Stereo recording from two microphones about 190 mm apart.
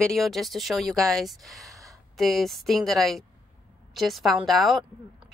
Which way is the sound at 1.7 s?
15° right (ahead or behind).